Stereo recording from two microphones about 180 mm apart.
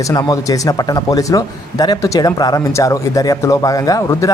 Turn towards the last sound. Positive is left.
turn(degrees=20)  # may be behind; listen again after turning